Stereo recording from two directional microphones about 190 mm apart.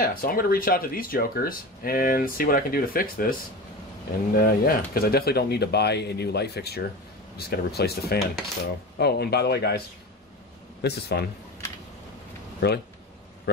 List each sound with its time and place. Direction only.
0.0 s speech: 50° left (ahead or behind)
4.4 s speech: 50° left (ahead or behind)
10.8 s speech: 60° left (ahead or behind)
12.5 s speech: 60° left (ahead or behind)